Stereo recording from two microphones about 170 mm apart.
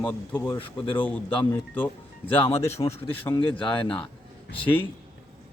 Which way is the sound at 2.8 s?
25° left (ahead or behind).